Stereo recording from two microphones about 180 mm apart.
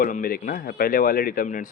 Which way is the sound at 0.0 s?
55° left (ahead or behind).